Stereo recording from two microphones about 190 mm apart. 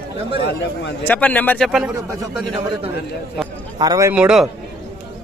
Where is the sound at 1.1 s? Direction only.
10° left (ahead or behind).